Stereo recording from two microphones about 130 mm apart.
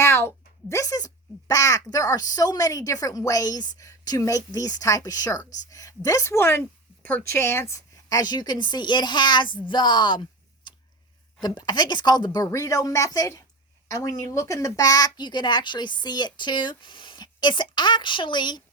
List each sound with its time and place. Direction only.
0.0 s speech: 20° left (ahead or behind)